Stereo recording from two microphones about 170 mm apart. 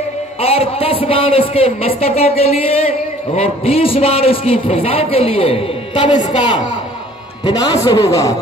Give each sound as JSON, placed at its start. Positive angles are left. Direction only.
{"t": 0.4, "sound": "a man's voice", "side_deg": 35}